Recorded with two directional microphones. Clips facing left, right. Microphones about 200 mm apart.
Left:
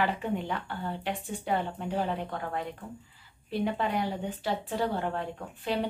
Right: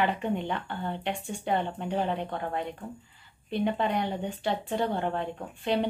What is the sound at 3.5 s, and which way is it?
A woman's voice, 5° left (ahead or behind).